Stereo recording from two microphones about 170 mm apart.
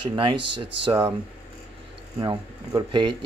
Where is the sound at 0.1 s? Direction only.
25° right (ahead or behind).